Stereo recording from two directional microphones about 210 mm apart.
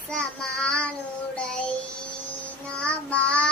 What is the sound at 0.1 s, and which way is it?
Child singing, 5° left (ahead or behind).